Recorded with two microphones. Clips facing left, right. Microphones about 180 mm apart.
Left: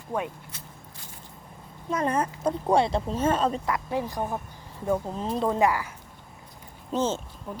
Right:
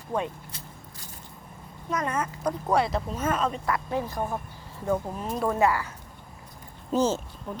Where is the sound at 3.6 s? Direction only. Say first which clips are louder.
Even; 15° left (ahead or behind).